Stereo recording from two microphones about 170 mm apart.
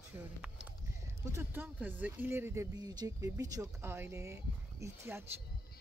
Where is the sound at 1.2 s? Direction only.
15° right (ahead or behind).